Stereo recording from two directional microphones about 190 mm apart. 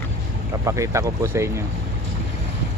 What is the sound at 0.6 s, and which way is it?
Speech, 15° right (ahead or behind).